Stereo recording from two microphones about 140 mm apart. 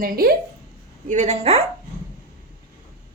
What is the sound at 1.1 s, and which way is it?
Speech, 55° right (ahead or behind).